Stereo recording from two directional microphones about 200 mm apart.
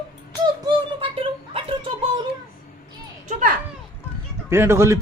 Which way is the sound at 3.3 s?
40° right (ahead or behind).